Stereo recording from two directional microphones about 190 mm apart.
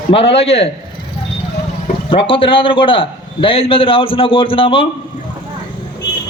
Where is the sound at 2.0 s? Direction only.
25° left (ahead or behind).